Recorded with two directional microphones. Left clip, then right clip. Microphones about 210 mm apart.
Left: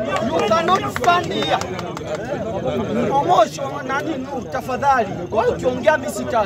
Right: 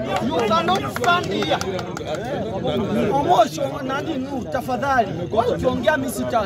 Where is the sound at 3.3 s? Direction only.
Centre (ahead or behind).